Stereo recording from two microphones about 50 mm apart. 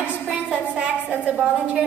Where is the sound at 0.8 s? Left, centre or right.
Right.